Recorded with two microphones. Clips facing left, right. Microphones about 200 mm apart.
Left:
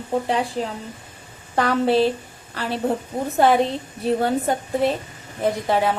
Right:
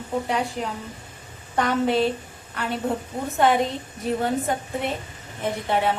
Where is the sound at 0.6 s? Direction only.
30° left (ahead or behind).